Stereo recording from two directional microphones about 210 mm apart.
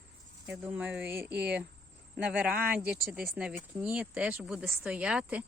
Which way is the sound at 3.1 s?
5° right (ahead or behind).